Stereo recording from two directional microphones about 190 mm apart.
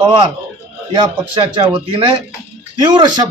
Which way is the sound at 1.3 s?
25° right (ahead or behind).